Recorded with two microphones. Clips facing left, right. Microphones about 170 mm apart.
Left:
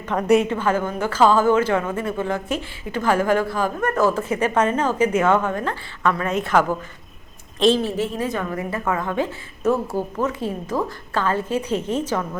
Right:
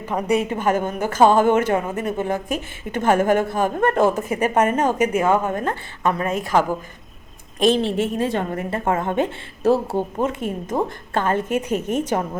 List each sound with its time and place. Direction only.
0.0 s a woman's voice: 10° right (ahead or behind)
7.8 s speech: 25° right (ahead or behind)